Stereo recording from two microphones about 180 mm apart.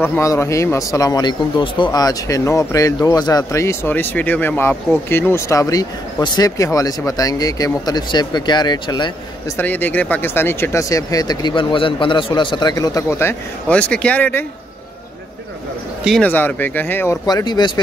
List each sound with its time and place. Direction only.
0.0 s speech: 15° left (ahead or behind)
9.6 s speech: 10° left (ahead or behind)
16.0 s speech: centre (ahead or behind)
16.3 s speech: 10° left (ahead or behind)